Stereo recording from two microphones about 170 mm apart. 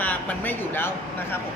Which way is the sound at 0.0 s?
10° left (ahead or behind).